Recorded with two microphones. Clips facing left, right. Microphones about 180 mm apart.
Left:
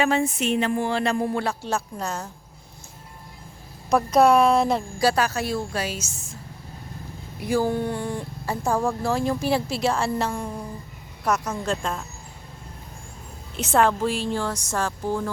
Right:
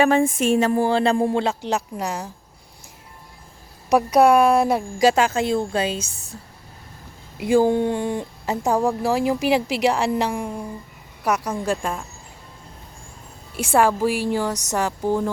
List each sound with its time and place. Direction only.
0.0 s speech: 50° right (ahead or behind); by 2.3 s 15° right (ahead or behind)
3.8 s speech: 10° right (ahead or behind)
5.0 s a woman's voice: 25° right (ahead or behind)
7.3 s speech: 25° right (ahead or behind)
13.6 s speech: 10° right (ahead or behind)